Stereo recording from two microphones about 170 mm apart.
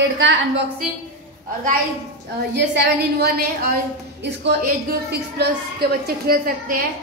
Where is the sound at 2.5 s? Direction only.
80° right.